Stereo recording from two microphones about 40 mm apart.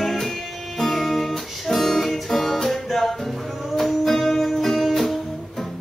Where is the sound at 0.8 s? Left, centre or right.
Centre.